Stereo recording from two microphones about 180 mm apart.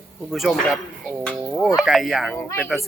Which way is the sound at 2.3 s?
10° left (ahead or behind).